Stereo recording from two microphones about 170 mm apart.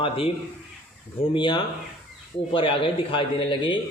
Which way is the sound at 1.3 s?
30° left (ahead or behind).